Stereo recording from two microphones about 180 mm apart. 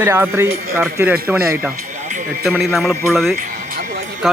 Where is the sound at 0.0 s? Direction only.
15° right (ahead or behind).